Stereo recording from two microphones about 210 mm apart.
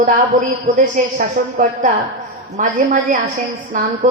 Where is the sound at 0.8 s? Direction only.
40° right (ahead or behind).